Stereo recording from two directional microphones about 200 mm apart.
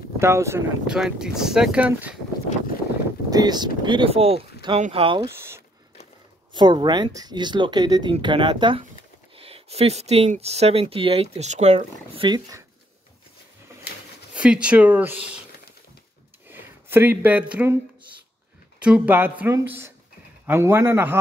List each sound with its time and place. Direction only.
0.2 s speech: 15° right (ahead or behind)
0.8 s speech: 5° right (ahead or behind)
3.3 s speech: 20° right (ahead or behind)
6.5 s speech: 20° right (ahead or behind)
14.3 s speech: 5° right (ahead or behind)
16.4 s speech: 10° right (ahead or behind)
18.8 s speech: 5° right (ahead or behind)